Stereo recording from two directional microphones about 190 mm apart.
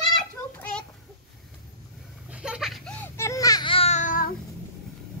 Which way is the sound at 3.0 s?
15° left (ahead or behind).